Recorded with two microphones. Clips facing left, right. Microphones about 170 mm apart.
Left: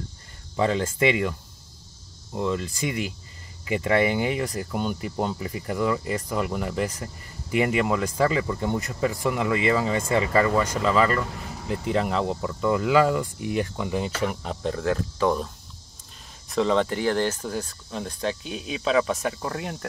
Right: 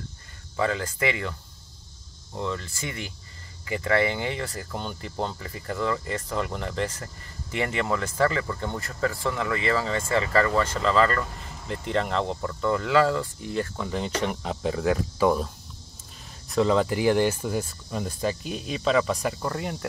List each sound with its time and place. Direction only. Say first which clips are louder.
0.6 s speech: left 4 dB; 25° left (ahead or behind)
2.3 s speech: left 5 dB; 15° left (ahead or behind); by 19.9 s centre (ahead or behind)